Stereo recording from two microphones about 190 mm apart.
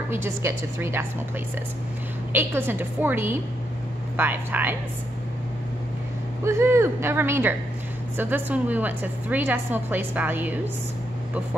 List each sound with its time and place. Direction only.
0.1 s a woman's voice: 15° right (ahead or behind)
2.3 s a woman's voice: 10° right (ahead or behind)
6.4 s a woman's voice: 15° right (ahead or behind)